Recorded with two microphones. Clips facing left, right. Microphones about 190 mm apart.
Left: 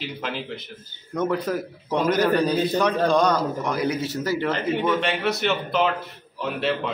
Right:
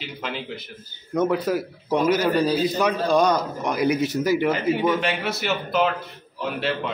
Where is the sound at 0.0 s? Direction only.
Centre (ahead or behind).